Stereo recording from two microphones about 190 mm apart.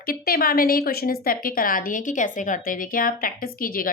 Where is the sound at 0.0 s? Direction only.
50° left (ahead or behind).